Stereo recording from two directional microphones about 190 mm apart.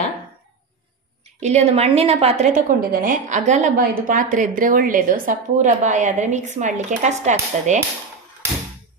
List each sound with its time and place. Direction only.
1.4 s a woman's voice: 35° right (ahead or behind)